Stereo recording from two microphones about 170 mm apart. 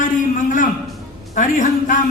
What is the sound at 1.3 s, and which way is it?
Speech, 50° left (ahead or behind).